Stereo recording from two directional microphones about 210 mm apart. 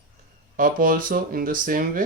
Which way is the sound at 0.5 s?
40° right (ahead or behind).